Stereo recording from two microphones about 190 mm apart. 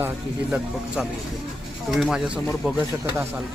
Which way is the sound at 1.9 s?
Centre (ahead or behind).